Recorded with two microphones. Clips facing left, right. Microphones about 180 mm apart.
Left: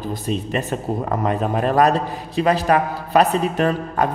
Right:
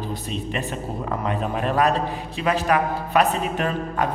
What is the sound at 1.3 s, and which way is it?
A man's voice, 40° left (ahead or behind).